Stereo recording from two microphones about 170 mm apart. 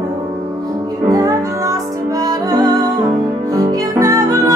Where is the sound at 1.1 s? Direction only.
20° right (ahead or behind).